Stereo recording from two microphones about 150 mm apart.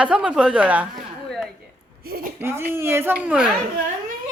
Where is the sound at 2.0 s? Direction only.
90° right.